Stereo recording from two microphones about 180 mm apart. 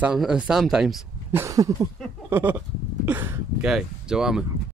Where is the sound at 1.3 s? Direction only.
15° right (ahead or behind).